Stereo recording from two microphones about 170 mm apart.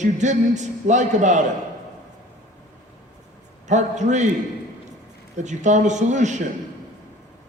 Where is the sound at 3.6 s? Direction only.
45° right (ahead or behind).